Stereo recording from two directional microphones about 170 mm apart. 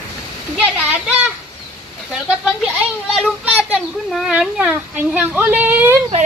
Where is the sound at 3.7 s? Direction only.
5° right (ahead or behind).